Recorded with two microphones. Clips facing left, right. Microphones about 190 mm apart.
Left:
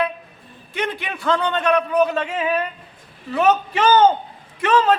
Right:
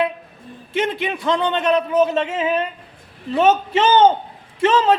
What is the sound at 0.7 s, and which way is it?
A man's voice, 25° right (ahead or behind).